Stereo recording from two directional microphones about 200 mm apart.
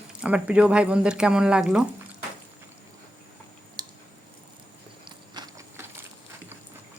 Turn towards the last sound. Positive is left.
turn(degrees=-15)  # may be behind; listen again after turning